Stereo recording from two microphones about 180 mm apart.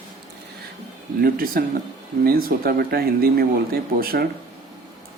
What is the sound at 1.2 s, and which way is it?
Speech, 55° right (ahead or behind).